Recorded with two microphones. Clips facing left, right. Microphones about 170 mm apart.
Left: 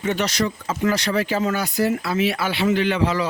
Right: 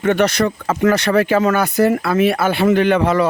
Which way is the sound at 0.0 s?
55° right (ahead or behind).